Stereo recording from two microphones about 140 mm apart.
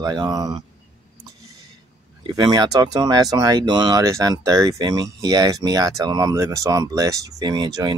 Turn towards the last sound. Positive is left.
turn(degrees=-30)  # may be behind; listen again after turning